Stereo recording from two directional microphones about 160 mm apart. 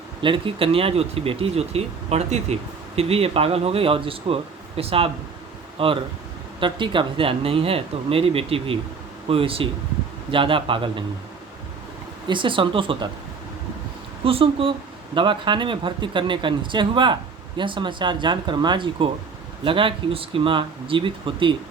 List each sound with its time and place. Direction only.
0.2 s speech: 30° right (ahead or behind)
12.3 s speech: 30° right (ahead or behind)
14.3 s speech: 35° right (ahead or behind)